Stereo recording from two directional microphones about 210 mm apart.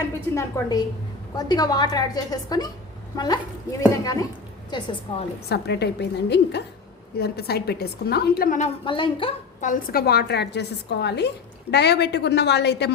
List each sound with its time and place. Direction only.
0.3 s a woman's voice: 15° left (ahead or behind)
5.5 s a woman's voice: 50° left (ahead or behind)
8.8 s a woman's voice: 25° left (ahead or behind)
9.6 s a woman's voice: 45° left (ahead or behind)